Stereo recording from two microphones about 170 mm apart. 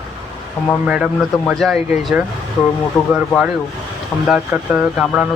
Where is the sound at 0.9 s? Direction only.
5° right (ahead or behind).